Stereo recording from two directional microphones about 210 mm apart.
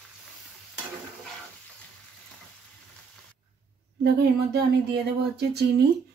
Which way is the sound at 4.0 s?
50° right (ahead or behind).